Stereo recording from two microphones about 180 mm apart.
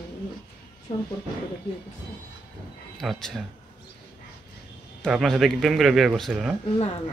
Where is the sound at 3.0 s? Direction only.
Centre (ahead or behind).